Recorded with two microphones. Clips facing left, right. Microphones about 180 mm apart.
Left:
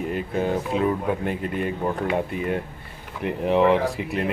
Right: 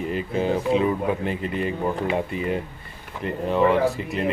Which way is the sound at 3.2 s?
15° left (ahead or behind).